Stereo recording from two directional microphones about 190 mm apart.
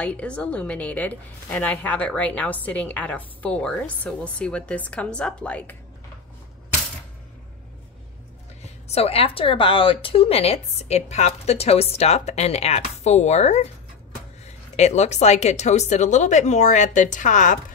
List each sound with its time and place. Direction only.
0.0 s a woman's voice: 5° left (ahead or behind)
8.8 s speech: 30° left (ahead or behind)